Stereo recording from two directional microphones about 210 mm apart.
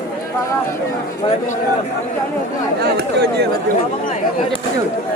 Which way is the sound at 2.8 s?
50° right (ahead or behind).